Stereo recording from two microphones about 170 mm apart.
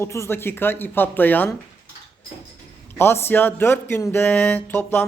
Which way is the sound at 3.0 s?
15° left (ahead or behind).